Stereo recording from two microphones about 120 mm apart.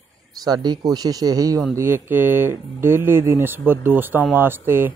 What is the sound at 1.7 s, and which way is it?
Speech, 20° right (ahead or behind).